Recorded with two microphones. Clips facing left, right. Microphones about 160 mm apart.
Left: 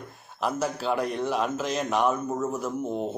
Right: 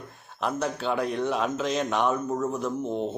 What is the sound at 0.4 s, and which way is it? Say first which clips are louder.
A man's voice: even; 5° left (ahead or behind).